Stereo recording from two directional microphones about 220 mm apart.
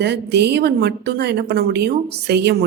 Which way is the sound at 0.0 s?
50° right (ahead or behind).